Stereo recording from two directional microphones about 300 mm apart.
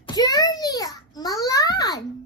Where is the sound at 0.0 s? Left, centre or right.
Centre.